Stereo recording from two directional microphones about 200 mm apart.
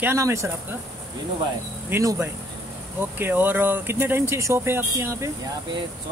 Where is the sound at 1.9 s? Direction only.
15° right (ahead or behind).